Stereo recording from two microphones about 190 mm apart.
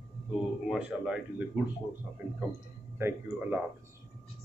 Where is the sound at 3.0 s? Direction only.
10° right (ahead or behind).